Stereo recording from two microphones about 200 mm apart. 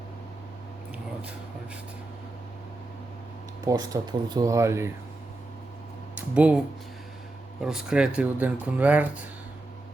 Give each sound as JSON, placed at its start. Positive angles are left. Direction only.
{"t": 3.6, "sound": "speech", "side_deg": -20}
{"t": 6.1, "sound": "speech", "side_deg": -5}
{"t": 7.6, "sound": "speech", "side_deg": -5}